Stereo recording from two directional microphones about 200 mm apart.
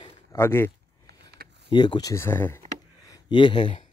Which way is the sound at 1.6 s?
20° left (ahead or behind).